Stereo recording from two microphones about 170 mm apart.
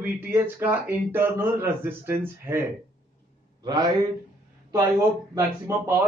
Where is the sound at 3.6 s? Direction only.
25° right (ahead or behind).